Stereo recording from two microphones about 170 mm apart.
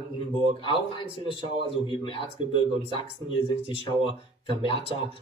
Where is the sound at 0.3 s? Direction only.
30° left (ahead or behind).